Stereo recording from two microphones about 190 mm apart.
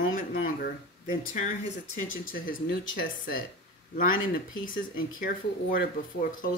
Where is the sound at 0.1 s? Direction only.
45° left (ahead or behind).